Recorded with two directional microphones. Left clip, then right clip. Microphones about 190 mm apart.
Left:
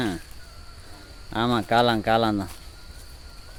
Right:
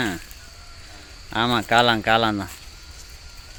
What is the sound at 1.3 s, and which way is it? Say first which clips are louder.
Speech: right 3 dB; 10° left (ahead or behind).